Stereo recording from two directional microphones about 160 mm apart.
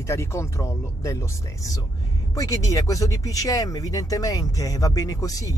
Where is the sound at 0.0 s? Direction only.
15° left (ahead or behind).